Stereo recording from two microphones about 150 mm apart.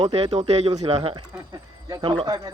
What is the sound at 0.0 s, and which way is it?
A man's voice, 40° right (ahead or behind).